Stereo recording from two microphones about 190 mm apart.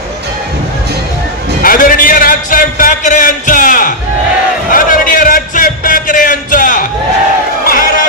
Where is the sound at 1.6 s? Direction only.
50° left (ahead or behind).